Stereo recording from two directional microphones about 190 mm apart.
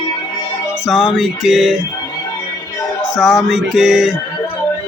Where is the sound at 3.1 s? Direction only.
Centre (ahead or behind).